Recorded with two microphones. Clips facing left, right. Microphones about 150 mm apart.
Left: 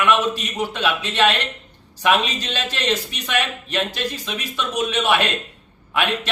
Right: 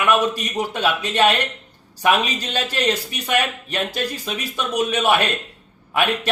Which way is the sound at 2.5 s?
40° right (ahead or behind).